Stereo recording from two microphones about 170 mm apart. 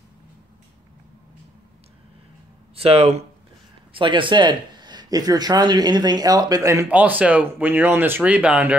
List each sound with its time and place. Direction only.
2.7 s speech: 35° right (ahead or behind); by 8.7 s 10° right (ahead or behind)